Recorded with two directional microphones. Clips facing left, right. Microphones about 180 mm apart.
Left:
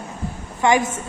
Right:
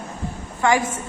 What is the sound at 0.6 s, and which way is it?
Speech, 20° left (ahead or behind).